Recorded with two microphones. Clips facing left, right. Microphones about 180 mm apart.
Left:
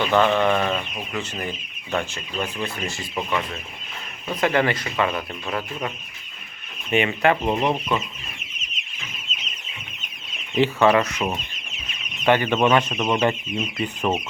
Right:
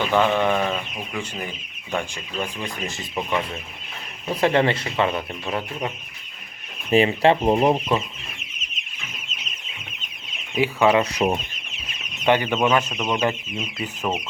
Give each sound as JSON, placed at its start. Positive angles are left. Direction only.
{"t": 0.1, "sound": "speech", "side_deg": -15}
{"t": 6.9, "sound": "speech", "side_deg": -30}
{"t": 10.5, "sound": "speech", "side_deg": -10}
{"t": 11.0, "sound": "speech", "side_deg": -35}
{"t": 12.2, "sound": "speech", "side_deg": -15}